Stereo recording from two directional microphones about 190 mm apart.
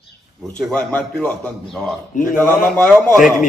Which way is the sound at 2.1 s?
45° left (ahead or behind).